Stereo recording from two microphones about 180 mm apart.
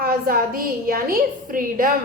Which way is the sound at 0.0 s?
55° right (ahead or behind).